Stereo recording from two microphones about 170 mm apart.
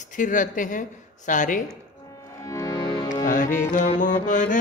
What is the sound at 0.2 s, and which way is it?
Music, 50° left (ahead or behind).